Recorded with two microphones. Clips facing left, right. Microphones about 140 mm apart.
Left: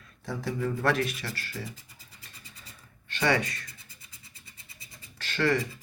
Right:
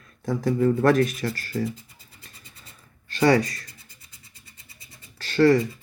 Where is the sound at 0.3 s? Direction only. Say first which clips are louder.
Right 9 dB; 45° right (ahead or behind).